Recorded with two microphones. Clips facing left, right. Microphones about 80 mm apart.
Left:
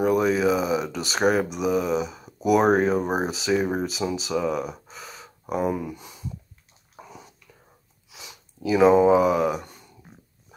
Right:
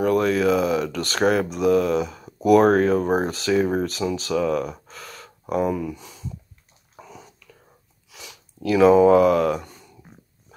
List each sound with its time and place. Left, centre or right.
0.0 s speech: centre
5.7 s speech: left
8.6 s speech: centre